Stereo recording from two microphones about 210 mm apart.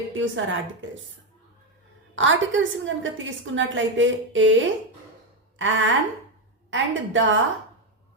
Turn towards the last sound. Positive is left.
turn(degrees=-65)  # may be behind; listen again after turning